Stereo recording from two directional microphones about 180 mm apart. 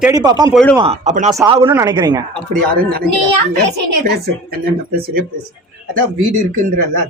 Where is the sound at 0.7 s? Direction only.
30° right (ahead or behind).